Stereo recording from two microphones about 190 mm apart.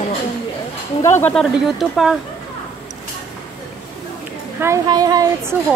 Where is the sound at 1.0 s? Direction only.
10° left (ahead or behind).